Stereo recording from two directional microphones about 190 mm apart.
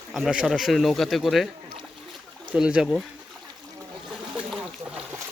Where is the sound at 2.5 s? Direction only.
5° right (ahead or behind).